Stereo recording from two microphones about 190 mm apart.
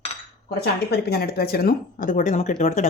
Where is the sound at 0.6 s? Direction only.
55° left (ahead or behind).